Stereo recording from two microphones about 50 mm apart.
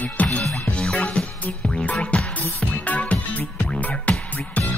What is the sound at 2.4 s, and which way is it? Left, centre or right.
Music, left.